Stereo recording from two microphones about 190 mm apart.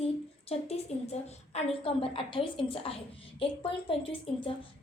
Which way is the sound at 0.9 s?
35° left (ahead or behind).